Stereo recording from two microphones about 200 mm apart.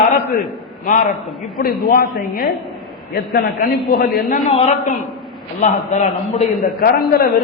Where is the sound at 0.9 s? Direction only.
45° left (ahead or behind).